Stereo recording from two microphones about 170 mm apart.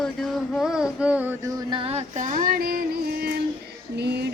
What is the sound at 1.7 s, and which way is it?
Female singing, 35° right (ahead or behind).